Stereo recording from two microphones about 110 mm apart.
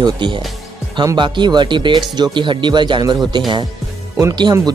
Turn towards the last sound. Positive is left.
turn(degrees=-40)  # may be behind; listen again after turning